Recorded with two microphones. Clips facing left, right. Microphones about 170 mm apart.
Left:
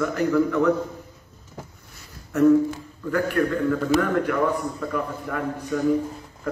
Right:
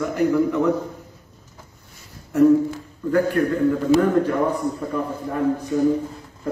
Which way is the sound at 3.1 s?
20° right (ahead or behind).